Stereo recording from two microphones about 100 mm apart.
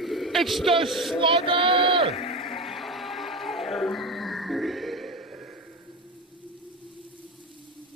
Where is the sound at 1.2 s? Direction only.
60° right (ahead or behind).